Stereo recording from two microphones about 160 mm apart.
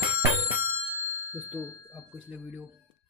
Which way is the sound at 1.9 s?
10° right (ahead or behind).